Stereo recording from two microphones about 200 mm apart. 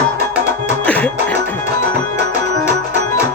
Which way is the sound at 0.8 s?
5° left (ahead or behind).